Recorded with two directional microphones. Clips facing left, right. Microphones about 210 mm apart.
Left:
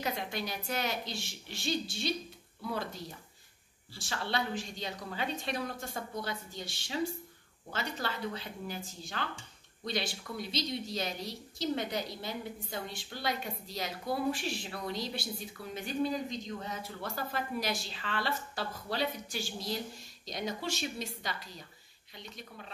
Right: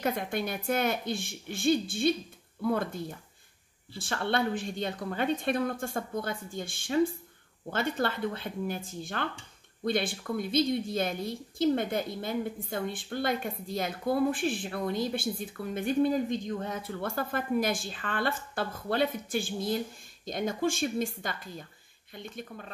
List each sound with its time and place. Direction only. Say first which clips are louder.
0.0 s a woman's voice: right 5 dB; 50° right (ahead or behind)